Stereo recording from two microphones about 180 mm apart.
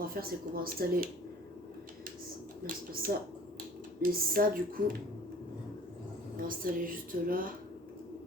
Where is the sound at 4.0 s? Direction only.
50° right (ahead or behind).